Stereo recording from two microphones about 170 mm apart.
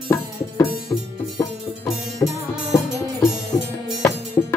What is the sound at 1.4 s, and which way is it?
Music, 20° left (ahead or behind).